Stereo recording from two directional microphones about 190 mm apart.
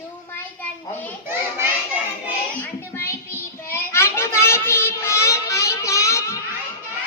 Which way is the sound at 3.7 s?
15° left (ahead or behind).